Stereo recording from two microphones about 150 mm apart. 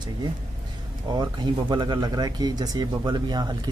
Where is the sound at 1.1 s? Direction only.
30° right (ahead or behind).